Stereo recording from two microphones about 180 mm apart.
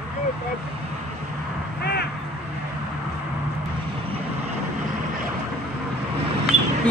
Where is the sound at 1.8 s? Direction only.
65° left (ahead or behind).